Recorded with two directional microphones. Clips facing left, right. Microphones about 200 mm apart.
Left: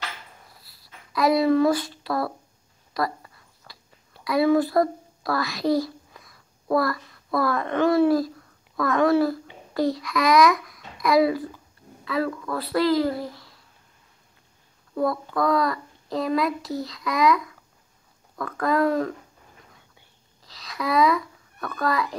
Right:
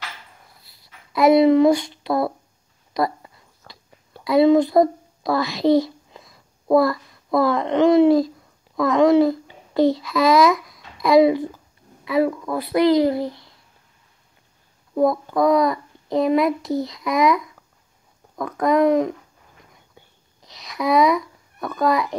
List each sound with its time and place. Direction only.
0.7 s speech: 25° right (ahead or behind)
2.9 s a sound: 20° right (ahead or behind)
4.2 s a child's voice: 25° right (ahead or behind)
15.0 s a child's voice: 20° right (ahead or behind)
20.4 s a child's voice: 20° right (ahead or behind)